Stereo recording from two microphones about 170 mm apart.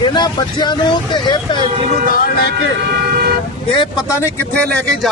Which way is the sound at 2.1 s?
70° left (ahead or behind).